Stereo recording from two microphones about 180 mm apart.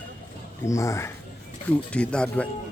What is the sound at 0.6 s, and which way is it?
Speech, 15° left (ahead or behind).